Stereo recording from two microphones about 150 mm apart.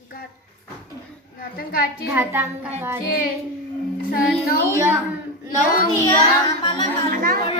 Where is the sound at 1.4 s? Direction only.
75° left (ahead or behind).